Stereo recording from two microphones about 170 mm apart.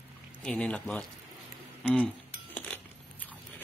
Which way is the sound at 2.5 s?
10° left (ahead or behind).